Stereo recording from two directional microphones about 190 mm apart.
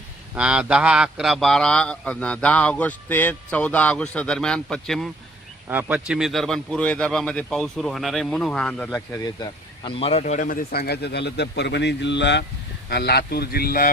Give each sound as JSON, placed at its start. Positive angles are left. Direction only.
{"t": 0.3, "sound": "a man's voice", "side_deg": -5}
{"t": 5.6, "sound": "a man's voice", "side_deg": -10}
{"t": 9.2, "sound": "speech", "side_deg": 25}